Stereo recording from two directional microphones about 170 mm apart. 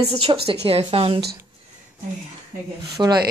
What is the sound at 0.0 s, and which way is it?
A woman's voice, 35° right (ahead or behind).